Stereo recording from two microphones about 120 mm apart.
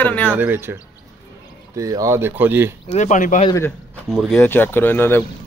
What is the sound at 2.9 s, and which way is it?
Speech, 85° left.